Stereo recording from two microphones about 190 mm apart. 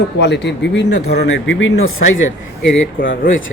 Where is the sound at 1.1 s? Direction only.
75° left (ahead or behind).